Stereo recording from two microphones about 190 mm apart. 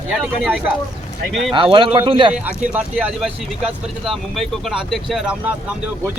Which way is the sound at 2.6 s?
5° right (ahead or behind).